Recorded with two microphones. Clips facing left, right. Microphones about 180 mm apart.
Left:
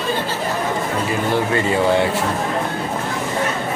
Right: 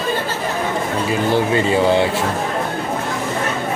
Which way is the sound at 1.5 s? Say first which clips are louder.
Even; 20° right (ahead or behind).